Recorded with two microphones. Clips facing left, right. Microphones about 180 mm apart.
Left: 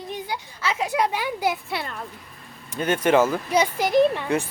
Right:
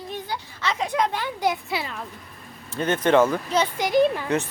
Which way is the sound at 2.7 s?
10° left (ahead or behind).